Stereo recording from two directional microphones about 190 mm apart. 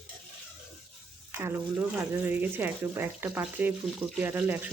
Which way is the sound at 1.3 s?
15° right (ahead or behind).